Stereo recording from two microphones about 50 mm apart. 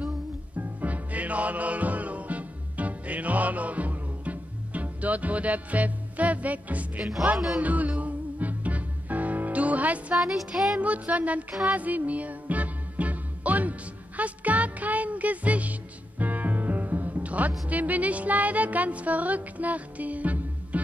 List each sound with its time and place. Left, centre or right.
0.6 s music: right
7.3 s music: centre
7.6 s music: right
10.1 s music: centre
10.8 s child singing: right
11.6 s music: right